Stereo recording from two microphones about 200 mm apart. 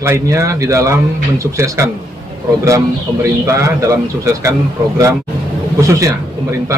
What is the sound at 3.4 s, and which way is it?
Speech, 15° right (ahead or behind).